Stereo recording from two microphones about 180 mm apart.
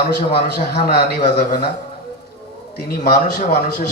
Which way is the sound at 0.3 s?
65° left (ahead or behind).